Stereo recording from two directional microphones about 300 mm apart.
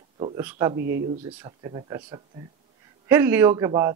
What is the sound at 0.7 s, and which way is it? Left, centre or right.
Speech, right.